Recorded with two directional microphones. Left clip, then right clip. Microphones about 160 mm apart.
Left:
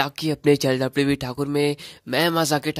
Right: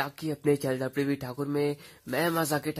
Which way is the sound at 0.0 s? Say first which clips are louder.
Left 8 dB; 35° left (ahead or behind).